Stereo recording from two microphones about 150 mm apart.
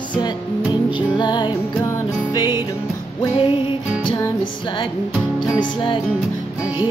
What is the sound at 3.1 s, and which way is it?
Music, 35° left (ahead or behind).